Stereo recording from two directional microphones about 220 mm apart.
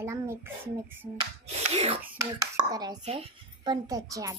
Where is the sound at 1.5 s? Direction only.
30° right (ahead or behind).